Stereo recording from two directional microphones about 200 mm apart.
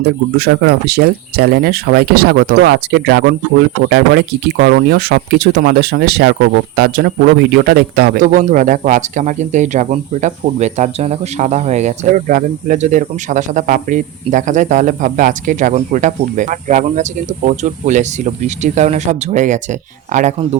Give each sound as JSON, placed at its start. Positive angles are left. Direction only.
{"t": 0.0, "sound": "speech", "side_deg": -55}